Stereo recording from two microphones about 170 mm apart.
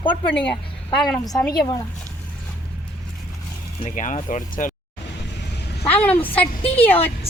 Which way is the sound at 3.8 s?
45° left (ahead or behind).